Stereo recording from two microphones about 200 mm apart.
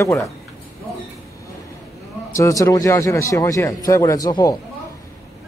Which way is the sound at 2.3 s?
15° left (ahead or behind).